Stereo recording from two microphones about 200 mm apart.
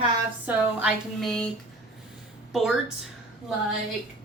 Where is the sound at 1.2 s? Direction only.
5° left (ahead or behind).